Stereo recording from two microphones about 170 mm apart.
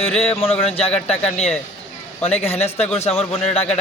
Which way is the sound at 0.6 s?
35° left (ahead or behind).